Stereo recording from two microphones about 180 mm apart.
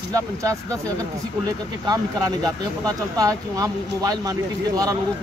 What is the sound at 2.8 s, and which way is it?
Speech, 20° right (ahead or behind).